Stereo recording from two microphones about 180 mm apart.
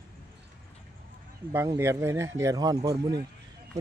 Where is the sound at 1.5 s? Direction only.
15° right (ahead or behind).